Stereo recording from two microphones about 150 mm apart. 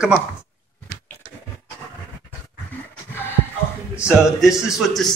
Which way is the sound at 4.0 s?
Centre (ahead or behind).